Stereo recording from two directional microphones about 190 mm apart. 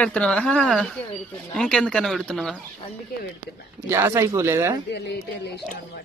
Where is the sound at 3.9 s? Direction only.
15° right (ahead or behind).